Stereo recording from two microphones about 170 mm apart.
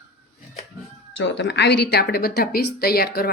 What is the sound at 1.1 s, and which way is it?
Speech, 90° left.